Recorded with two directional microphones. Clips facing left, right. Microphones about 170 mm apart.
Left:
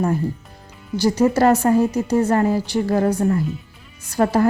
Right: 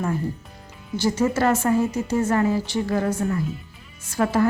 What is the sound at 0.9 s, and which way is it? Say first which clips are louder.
A woman's voice: left 5 dB; 35° left (ahead or behind).